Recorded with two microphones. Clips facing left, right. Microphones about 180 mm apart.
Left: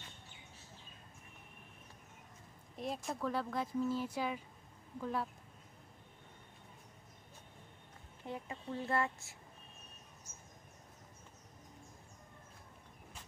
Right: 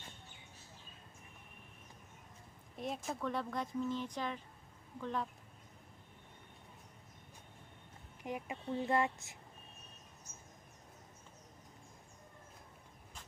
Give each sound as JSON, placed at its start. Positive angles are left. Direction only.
{"t": 2.7, "sound": "speech", "side_deg": 0}
{"t": 8.2, "sound": "speech", "side_deg": -15}